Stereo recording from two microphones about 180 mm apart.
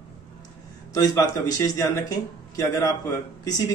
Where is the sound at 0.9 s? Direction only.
20° left (ahead or behind).